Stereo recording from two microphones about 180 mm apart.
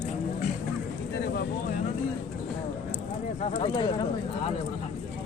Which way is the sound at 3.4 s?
30° left (ahead or behind).